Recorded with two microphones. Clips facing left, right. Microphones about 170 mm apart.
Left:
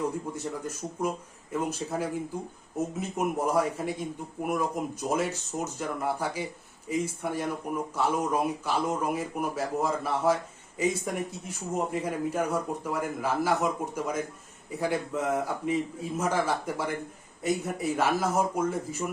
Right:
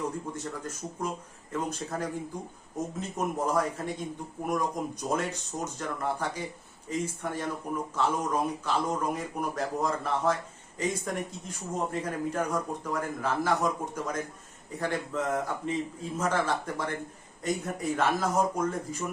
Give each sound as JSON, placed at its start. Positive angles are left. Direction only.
{"t": 0.3, "sound": "a man's voice", "side_deg": 10}
{"t": 17.9, "sound": "a man's voice", "side_deg": 10}